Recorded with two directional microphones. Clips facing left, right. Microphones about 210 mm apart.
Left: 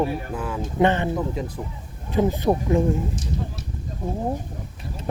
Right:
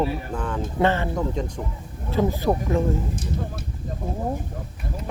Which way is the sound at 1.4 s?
5° left (ahead or behind).